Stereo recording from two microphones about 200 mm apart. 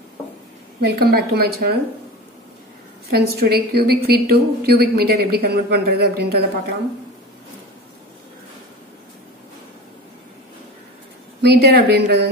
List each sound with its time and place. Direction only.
0.7 s a woman's voice: 50° right (ahead or behind)
3.1 s a woman's voice: 50° right (ahead or behind)
11.4 s a woman's voice: 55° right (ahead or behind)